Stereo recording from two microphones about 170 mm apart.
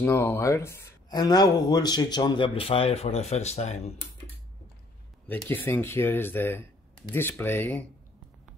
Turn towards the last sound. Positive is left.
turn(degrees=10)  # may be behind; listen again after turning